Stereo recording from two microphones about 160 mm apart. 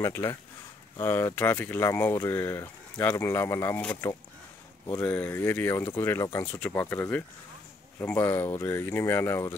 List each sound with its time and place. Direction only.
0.0 s speech: 15° left (ahead or behind)